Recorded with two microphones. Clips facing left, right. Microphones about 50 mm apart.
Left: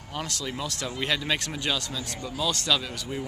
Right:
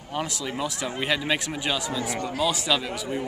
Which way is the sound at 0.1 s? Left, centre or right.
Centre.